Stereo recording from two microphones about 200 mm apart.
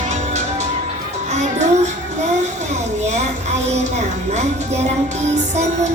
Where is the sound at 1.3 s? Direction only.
35° right (ahead or behind).